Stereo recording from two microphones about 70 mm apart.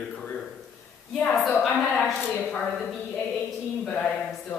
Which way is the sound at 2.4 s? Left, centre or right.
Centre.